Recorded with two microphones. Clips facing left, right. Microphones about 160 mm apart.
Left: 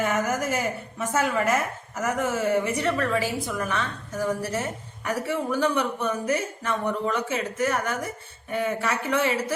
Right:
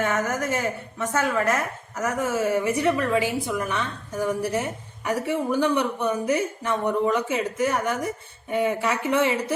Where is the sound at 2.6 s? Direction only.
15° right (ahead or behind).